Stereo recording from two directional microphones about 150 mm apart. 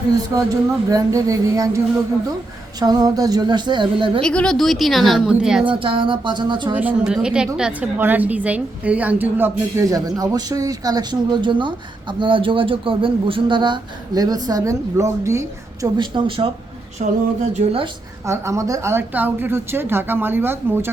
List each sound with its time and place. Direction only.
0.3 s a woman's voice: 20° right (ahead or behind)
2.8 s a woman's voice: 25° right (ahead or behind)
4.2 s a woman's voice: 5° left (ahead or behind)
5.8 s speech: 35° right (ahead or behind)
6.7 s a woman's voice: 10° right (ahead or behind)
16.0 s speech: 35° right (ahead or behind)
17.0 s a sound: 50° right (ahead or behind)
17.5 s speech: 40° right (ahead or behind)
18.3 s a woman's voice: 20° right (ahead or behind)